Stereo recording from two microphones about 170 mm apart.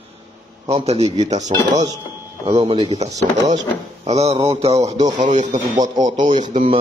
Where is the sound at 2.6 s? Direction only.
35° right (ahead or behind).